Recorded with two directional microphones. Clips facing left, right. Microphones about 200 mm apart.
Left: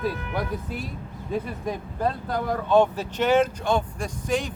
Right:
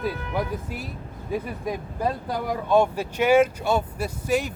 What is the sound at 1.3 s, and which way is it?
Speech, 10° right (ahead or behind).